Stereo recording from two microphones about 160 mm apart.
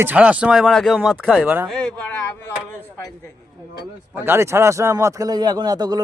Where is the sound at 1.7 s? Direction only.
5° left (ahead or behind).